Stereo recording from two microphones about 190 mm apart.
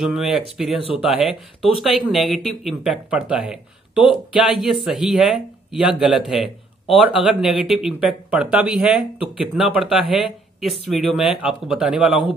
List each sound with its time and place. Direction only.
0.0 s speech: 5° right (ahead or behind)
3.9 s speech: 25° left (ahead or behind)
4.3 s speech: 5° right (ahead or behind)